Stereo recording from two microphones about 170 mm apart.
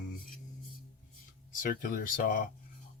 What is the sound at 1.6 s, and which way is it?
Speech, 55° left (ahead or behind).